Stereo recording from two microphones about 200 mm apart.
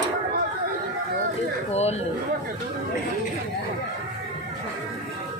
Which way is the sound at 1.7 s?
30° left (ahead or behind).